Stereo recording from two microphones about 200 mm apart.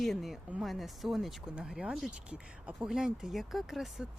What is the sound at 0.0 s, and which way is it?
Speech, centre (ahead or behind).